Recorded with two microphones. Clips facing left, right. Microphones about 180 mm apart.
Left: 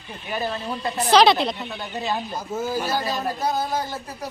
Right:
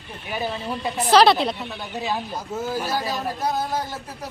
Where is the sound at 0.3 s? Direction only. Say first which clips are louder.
Even; 5° right (ahead or behind).